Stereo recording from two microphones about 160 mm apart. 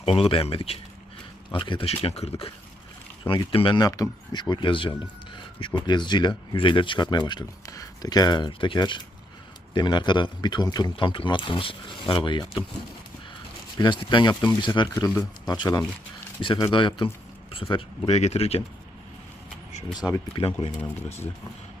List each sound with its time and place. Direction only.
0.0 s speech: 35° left (ahead or behind)
13.7 s speech: 30° left (ahead or behind)
19.9 s speech: 25° left (ahead or behind)